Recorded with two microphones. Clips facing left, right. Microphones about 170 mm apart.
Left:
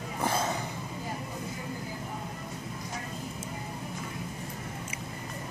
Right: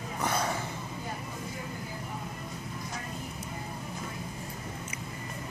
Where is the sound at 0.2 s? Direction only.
25° left (ahead or behind).